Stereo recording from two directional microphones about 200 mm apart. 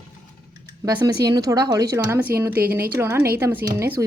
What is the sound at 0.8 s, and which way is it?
Speech, 20° right (ahead or behind).